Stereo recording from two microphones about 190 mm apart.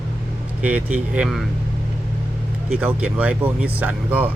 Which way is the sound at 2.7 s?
5° right (ahead or behind).